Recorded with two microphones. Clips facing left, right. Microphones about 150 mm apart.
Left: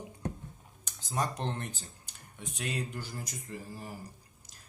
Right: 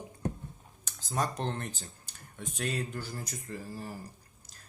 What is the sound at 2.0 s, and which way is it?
Speech, 15° left (ahead or behind).